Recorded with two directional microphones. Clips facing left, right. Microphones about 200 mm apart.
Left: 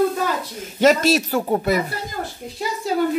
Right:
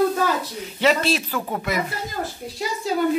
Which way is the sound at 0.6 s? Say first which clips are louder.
Left 5 dB; 45° left (ahead or behind).